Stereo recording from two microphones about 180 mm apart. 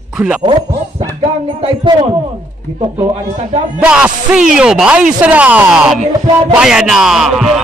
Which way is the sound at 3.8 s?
5° right (ahead or behind).